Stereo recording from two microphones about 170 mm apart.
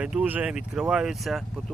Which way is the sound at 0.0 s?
5° right (ahead or behind).